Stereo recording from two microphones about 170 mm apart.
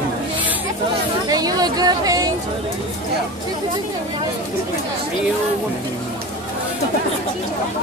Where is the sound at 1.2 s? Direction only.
20° right (ahead or behind).